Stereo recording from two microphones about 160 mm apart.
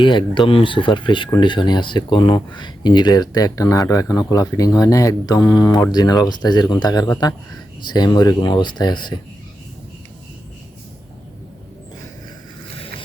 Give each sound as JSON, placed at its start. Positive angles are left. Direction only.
{"t": 0.0, "sound": "speech", "side_deg": 30}